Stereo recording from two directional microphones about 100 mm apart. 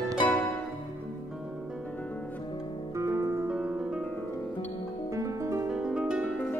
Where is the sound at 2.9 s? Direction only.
30° right (ahead or behind).